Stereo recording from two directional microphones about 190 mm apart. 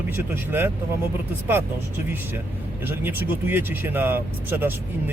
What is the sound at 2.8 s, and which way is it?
Speech, 10° right (ahead or behind).